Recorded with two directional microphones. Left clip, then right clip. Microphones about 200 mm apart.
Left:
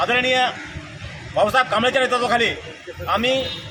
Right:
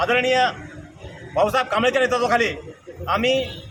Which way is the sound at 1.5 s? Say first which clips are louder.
Left 3 dB; 20° right (ahead or behind).